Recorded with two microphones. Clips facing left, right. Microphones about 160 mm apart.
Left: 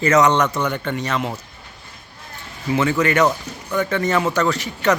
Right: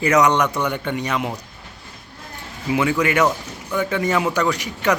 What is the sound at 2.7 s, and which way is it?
A man's voice, 10° right (ahead or behind).